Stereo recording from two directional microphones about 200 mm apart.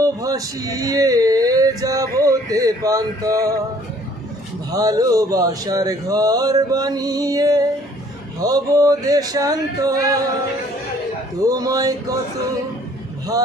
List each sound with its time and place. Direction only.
0.0 s speech: 15° right (ahead or behind)
4.7 s speech: 20° right (ahead or behind)
11.4 s speech: 15° right (ahead or behind)